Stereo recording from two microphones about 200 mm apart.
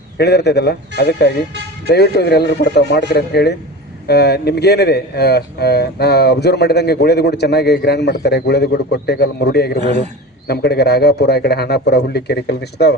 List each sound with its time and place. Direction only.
0.2 s speech: 55° left (ahead or behind)